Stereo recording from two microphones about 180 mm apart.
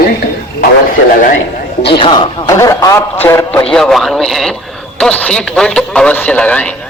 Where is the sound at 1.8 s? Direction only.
30° left (ahead or behind).